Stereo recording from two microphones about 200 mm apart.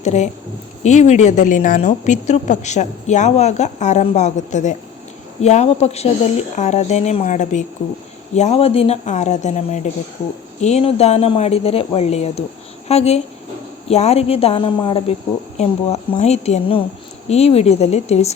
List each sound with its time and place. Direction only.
0.0 s a woman's voice: 35° left (ahead or behind)